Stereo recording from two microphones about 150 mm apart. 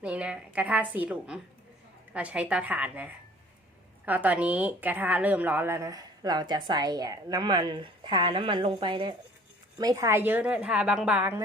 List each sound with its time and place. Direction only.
0.0 s a woman's voice: 5° right (ahead or behind)